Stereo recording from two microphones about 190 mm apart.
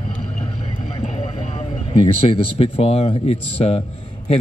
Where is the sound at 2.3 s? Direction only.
30° left (ahead or behind).